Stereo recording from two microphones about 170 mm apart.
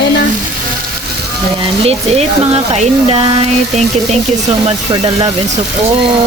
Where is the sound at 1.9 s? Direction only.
40° right (ahead or behind).